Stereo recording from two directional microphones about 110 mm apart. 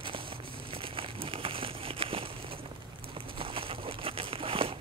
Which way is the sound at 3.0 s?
55° right (ahead or behind).